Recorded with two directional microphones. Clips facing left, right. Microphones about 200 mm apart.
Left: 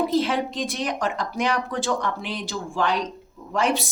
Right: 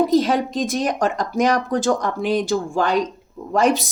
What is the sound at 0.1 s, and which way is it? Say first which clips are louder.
A woman's voice: right 5 dB; 40° right (ahead or behind).